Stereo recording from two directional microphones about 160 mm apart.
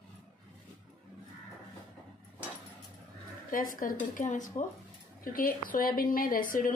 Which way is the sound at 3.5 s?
60° left (ahead or behind).